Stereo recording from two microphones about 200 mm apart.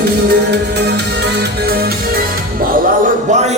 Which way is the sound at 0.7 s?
55° right (ahead or behind).